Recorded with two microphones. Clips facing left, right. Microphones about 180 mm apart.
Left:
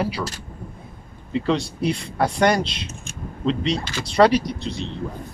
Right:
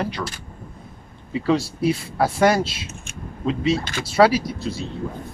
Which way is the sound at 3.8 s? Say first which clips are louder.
Right 1 dB; 50° right (ahead or behind).